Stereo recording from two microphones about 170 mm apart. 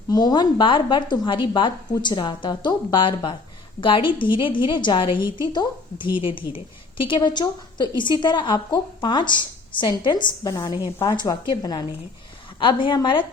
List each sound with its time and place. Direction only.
0.1 s a woman's voice: 25° left (ahead or behind)